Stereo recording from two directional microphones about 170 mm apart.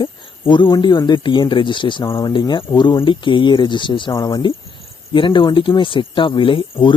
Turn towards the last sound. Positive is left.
turn(degrees=30)  # may be behind; listen again after turning